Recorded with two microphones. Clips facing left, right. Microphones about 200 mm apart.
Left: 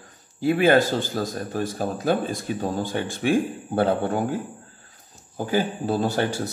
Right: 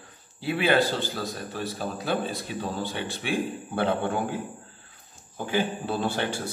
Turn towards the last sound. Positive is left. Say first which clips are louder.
# left 4 dB
turn(degrees=40)  # may be behind; listen again after turning